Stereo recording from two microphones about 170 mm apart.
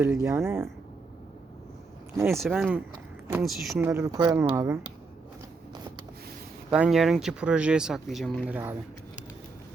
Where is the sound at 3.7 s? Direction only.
15° right (ahead or behind).